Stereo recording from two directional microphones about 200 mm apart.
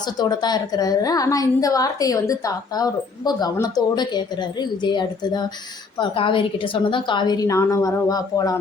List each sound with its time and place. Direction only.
0.0 s a woman's voice: 20° left (ahead or behind)